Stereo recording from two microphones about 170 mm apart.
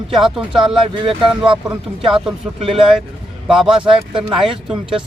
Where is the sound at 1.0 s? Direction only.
30° right (ahead or behind).